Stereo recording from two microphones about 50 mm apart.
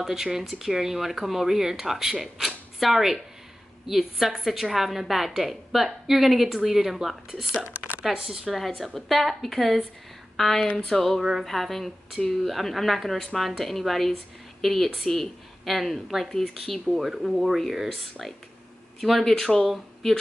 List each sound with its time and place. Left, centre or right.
0.0 s a woman's voice: centre
7.6 s a sound: right
8.0 s speech: centre
8.5 s a woman's voice: centre
18.9 s a woman's voice: centre